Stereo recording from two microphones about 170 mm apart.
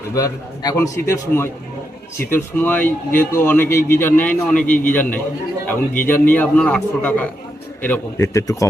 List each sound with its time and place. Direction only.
0.1 s a man's voice: 20° left (ahead or behind)